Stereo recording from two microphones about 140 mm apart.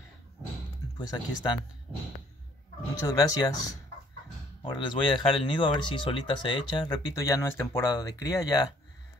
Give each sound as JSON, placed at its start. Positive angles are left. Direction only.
{"t": 0.9, "sound": "speech", "side_deg": 30}
{"t": 3.0, "sound": "speech", "side_deg": 25}
{"t": 4.6, "sound": "speech", "side_deg": 35}